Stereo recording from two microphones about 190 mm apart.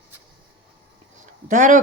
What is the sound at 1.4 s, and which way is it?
Speech, 45° right (ahead or behind).